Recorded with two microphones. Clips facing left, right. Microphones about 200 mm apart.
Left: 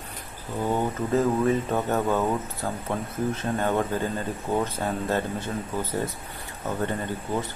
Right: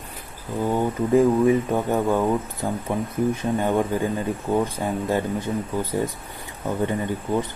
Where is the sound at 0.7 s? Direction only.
10° right (ahead or behind).